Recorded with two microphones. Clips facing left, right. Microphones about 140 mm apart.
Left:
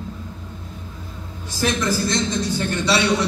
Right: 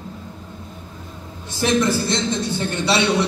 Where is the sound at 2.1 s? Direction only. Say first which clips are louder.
Even; 25° right (ahead or behind).